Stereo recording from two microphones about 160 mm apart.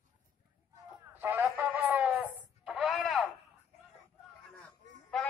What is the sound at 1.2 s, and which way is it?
Radio, 10° right (ahead or behind).